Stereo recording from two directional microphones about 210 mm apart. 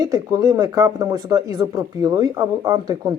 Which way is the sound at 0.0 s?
20° right (ahead or behind).